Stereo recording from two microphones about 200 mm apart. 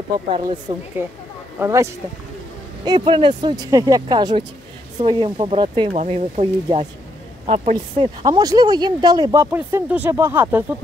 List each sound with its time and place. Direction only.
0.3 s speech: 25° right (ahead or behind)
1.6 s speech: 15° right (ahead or behind)